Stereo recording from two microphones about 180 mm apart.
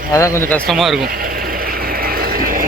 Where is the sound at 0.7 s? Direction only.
Centre (ahead or behind).